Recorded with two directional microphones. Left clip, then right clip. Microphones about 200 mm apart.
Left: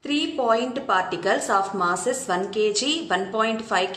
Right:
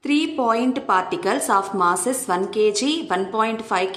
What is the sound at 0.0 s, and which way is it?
A woman's voice, 30° right (ahead or behind).